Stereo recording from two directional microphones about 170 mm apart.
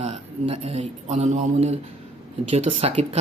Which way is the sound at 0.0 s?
35° right (ahead or behind).